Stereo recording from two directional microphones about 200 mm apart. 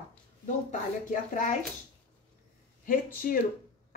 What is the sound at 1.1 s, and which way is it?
Speech, 40° left (ahead or behind).